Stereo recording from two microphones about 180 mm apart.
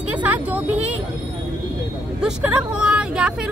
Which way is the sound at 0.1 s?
10° right (ahead or behind).